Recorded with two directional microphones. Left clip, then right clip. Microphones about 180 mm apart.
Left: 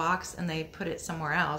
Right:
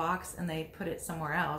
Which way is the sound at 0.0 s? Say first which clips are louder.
Left 4 dB; 20° left (ahead or behind).